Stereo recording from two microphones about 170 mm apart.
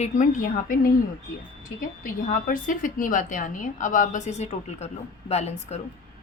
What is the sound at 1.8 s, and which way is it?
A woman's voice, 55° left (ahead or behind).